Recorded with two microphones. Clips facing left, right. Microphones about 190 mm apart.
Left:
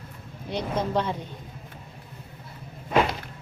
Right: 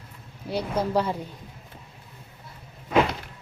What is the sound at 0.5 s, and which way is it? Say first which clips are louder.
Speech: right 2 dB; 10° right (ahead or behind).